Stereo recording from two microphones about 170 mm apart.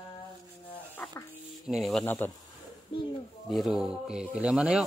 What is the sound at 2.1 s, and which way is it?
Speech, 10° left (ahead or behind).